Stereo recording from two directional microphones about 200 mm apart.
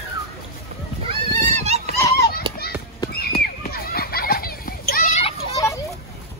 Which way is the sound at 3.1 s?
50° left (ahead or behind).